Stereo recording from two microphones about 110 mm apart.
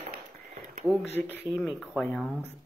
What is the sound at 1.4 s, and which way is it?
Speech, 5° right (ahead or behind).